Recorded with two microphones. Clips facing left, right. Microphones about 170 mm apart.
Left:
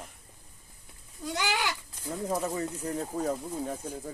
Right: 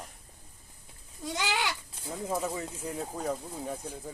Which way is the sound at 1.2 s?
20° right (ahead or behind).